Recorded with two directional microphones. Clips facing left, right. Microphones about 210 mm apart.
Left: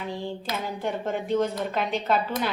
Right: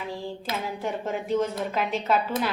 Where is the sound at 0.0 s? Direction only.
Centre (ahead or behind).